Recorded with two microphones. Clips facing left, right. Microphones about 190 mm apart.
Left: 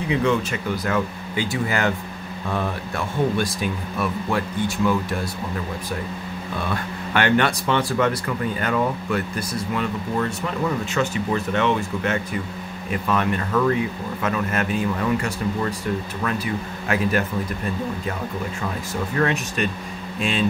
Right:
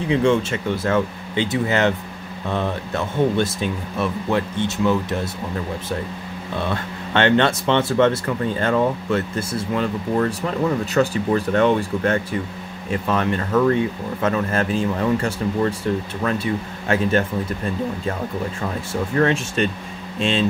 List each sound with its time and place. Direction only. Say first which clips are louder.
0.1 s speech: right 4 dB; 30° right (ahead or behind)
6.5 s speech: right 3 dB; 25° right (ahead or behind)
10.1 s speech: right 5 dB; 40° right (ahead or behind)
19.1 s speech: right 4 dB; 30° right (ahead or behind)